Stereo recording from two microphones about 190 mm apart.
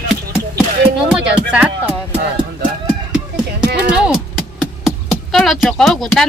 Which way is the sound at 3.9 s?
5° right (ahead or behind).